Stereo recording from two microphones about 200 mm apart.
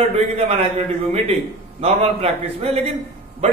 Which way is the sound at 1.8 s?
30° right (ahead or behind).